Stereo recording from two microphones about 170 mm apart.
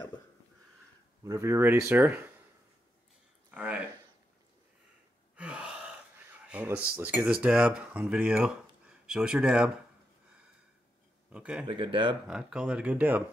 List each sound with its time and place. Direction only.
1.2 s speech: 15° right (ahead or behind)
3.5 s speech: 5° right (ahead or behind)
5.3 s gasp: 5° right (ahead or behind)
6.4 s a sound: 10° right (ahead or behind)
6.9 s speech: 10° right (ahead or behind)
11.3 s speech: 5° right (ahead or behind)
11.6 s speech: 30° right (ahead or behind)
12.3 s speech: 5° right (ahead or behind)